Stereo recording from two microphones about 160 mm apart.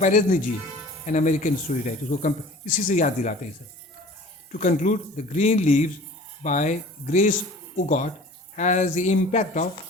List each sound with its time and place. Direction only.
0.0 s speech: 50° left (ahead or behind)
4.5 s speech: 50° left (ahead or behind)
8.5 s speech: 50° left (ahead or behind)